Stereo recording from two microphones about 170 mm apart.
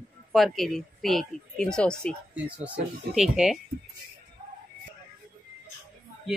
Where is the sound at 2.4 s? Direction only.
10° right (ahead or behind).